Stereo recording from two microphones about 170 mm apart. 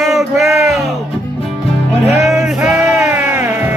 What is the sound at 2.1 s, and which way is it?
Music, centre (ahead or behind).